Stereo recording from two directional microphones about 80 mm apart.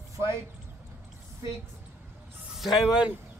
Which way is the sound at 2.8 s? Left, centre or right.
Centre.